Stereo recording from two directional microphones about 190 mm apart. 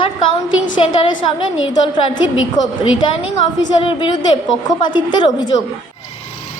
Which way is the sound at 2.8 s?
90° left.